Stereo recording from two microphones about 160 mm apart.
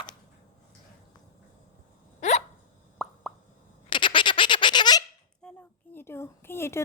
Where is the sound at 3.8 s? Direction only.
30° left (ahead or behind).